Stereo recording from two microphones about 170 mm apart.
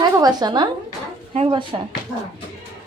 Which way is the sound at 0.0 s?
25° right (ahead or behind).